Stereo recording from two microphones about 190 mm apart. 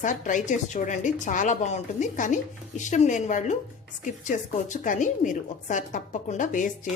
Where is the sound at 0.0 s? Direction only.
40° left (ahead or behind).